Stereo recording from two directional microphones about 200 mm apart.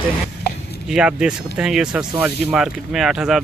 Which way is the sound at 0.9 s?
5° right (ahead or behind).